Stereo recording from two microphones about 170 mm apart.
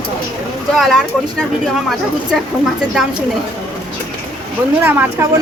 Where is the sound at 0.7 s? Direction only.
Centre (ahead or behind).